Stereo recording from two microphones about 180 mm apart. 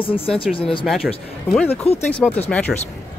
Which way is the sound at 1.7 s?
35° left (ahead or behind).